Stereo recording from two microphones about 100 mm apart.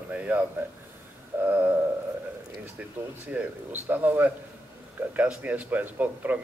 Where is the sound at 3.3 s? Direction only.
20° right (ahead or behind).